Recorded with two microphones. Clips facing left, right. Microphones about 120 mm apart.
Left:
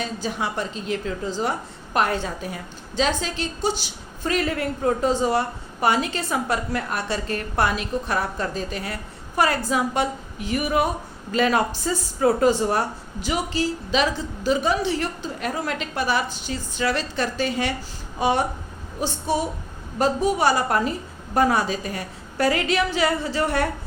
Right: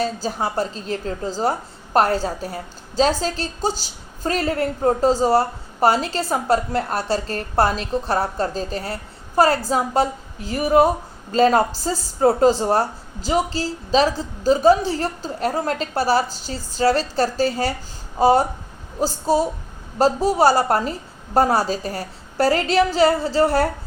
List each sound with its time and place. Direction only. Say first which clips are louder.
0.0 s a woman's voice: right 4 dB; 35° right (ahead or behind)